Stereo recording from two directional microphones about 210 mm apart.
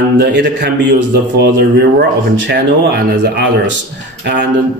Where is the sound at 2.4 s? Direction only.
50° right (ahead or behind).